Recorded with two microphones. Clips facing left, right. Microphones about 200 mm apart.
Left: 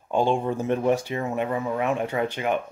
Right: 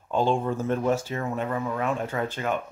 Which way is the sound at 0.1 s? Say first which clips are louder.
Left 1 dB; 15° left (ahead or behind).